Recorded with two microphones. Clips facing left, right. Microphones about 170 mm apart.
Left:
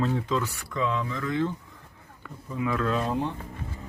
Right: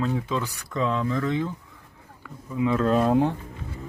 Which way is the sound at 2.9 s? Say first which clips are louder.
Right 7 dB; 45° right (ahead or behind).